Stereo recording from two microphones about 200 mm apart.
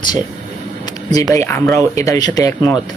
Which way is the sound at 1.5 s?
15° left (ahead or behind).